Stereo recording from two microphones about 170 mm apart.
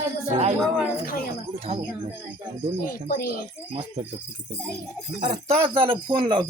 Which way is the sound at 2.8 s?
55° left (ahead or behind).